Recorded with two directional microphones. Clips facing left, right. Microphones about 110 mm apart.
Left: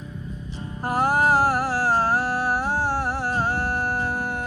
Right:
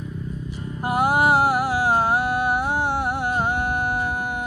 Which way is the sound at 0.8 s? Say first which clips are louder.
Right 1 dB; 10° right (ahead or behind).